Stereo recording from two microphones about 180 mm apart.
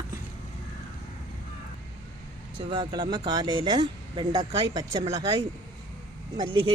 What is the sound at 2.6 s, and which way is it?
Speech, 25° right (ahead or behind).